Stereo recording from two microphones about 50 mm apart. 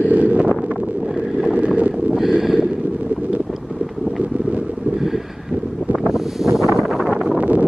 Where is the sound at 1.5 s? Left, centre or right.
Right.